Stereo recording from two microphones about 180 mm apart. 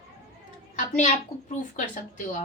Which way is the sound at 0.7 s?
45° left (ahead or behind).